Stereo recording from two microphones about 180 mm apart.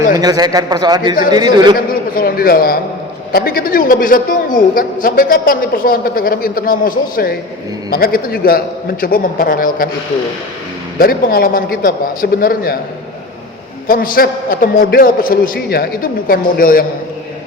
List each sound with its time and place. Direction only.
0.2 s a man's voice: 20° right (ahead or behind)
1.9 s a man's voice: 55° left (ahead or behind)
10.9 s a man's voice: 55° left (ahead or behind)
13.8 s a man's voice: 50° left (ahead or behind)